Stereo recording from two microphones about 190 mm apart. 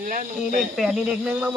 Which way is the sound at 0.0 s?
45° right (ahead or behind).